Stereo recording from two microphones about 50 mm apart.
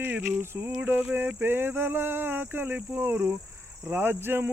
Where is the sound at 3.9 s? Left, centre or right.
Right.